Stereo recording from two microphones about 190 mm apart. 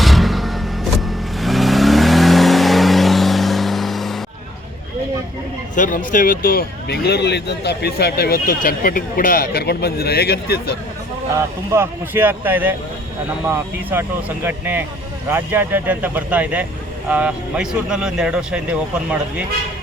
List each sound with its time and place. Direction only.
0.0 s vehicle: centre (ahead or behind)
5.7 s speech: 45° left (ahead or behind)
11.7 s speech: 10° right (ahead or behind)